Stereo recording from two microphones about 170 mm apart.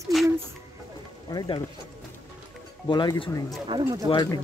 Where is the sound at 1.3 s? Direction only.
25° left (ahead or behind).